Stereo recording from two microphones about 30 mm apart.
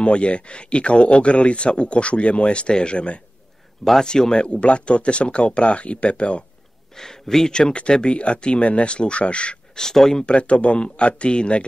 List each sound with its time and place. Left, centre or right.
0.0 s speech: left
4.0 s speech: left
4.5 s speech: left
7.0 s speech: centre
8.0 s speech: left
9.8 s speech: centre
10.2 s speech: left